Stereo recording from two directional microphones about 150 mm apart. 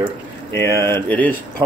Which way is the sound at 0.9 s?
10° left (ahead or behind).